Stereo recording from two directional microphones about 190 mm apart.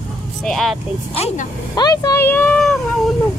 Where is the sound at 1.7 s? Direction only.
20° left (ahead or behind); by 2.7 s 5° left (ahead or behind).